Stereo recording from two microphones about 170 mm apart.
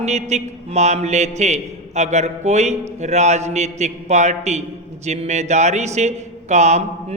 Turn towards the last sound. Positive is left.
turn(degrees=-40)  # may be behind; listen again after turning